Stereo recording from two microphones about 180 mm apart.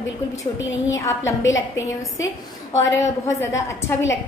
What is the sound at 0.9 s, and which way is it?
Speech, 15° left (ahead or behind).